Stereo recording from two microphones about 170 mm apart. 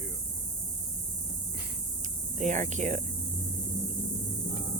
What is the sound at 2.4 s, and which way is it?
Speech, 45° right (ahead or behind).